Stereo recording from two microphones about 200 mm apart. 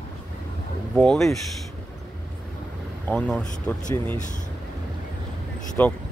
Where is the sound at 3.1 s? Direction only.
5° left (ahead or behind).